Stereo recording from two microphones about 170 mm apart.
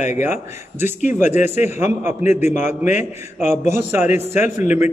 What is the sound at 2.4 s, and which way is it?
Speech, 50° left (ahead or behind).